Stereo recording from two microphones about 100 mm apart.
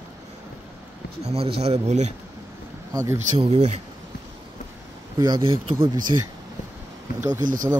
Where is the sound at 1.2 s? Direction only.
85° right.